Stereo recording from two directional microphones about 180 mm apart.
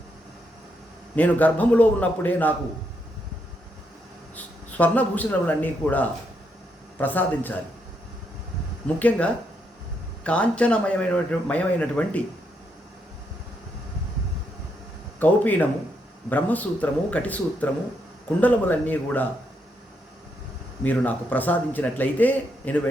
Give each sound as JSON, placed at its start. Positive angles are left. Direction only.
{"t": 1.1, "sound": "a man's voice", "side_deg": 10}
{"t": 4.8, "sound": "a man's voice", "side_deg": 10}
{"t": 9.0, "sound": "a man's voice", "side_deg": 10}
{"t": 15.2, "sound": "a man's voice", "side_deg": 10}
{"t": 20.8, "sound": "a man's voice", "side_deg": 10}